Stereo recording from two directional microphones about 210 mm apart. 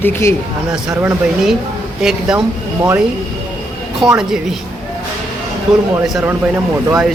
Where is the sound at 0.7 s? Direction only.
5° right (ahead or behind).